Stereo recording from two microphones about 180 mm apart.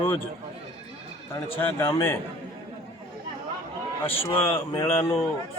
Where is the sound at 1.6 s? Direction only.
15° left (ahead or behind).